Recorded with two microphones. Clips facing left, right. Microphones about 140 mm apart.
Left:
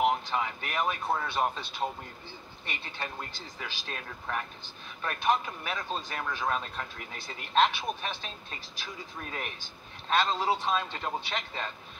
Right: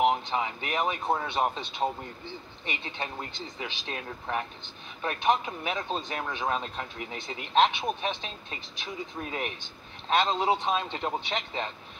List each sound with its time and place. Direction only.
0.3 s speech: 15° right (ahead or behind)